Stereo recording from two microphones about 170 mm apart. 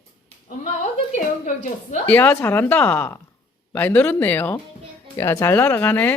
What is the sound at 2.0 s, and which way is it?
Speech, 10° left (ahead or behind).